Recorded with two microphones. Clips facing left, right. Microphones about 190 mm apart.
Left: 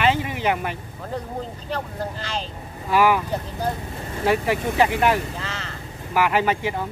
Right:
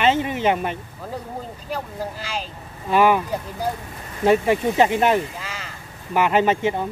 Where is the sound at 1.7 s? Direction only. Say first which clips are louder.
Right 2 dB; 10° right (ahead or behind).